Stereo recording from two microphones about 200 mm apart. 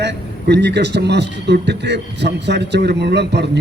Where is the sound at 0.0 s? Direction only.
60° right (ahead or behind).